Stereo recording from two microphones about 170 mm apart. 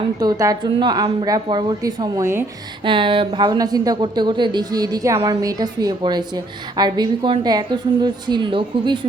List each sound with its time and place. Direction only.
0.2 s speech: 20° right (ahead or behind)
2.8 s speech: 30° right (ahead or behind)